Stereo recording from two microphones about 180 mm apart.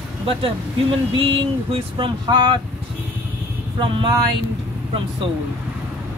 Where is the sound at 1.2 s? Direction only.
30° right (ahead or behind).